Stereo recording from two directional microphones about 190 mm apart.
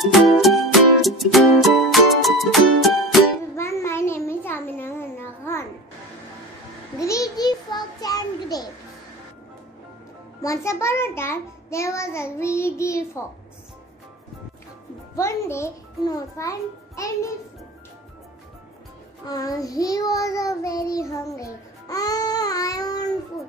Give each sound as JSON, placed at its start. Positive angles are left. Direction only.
{"t": 0.0, "sound": "music", "side_deg": 0}
{"t": 3.5, "sound": "a sound", "side_deg": 15}
{"t": 7.0, "sound": "a sound", "side_deg": 15}
{"t": 10.4, "sound": "a child's voice", "side_deg": 15}
{"t": 15.1, "sound": "a child's voice", "side_deg": 15}
{"t": 19.2, "sound": "child singing", "side_deg": 20}